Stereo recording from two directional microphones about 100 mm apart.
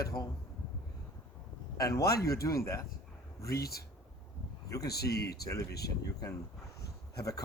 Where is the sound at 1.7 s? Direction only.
35° left (ahead or behind).